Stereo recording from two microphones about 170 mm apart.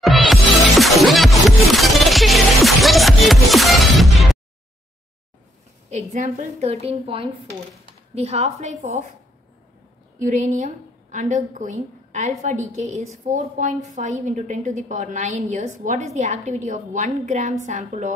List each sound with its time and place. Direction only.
0.0 s music: centre (ahead or behind)
5.9 s a woman's voice: 40° right (ahead or behind)
10.1 s a woman's voice: 45° right (ahead or behind)